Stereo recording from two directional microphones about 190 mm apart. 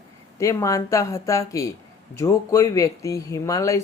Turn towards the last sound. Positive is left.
turn(degrees=15)  # may be behind; listen again after turning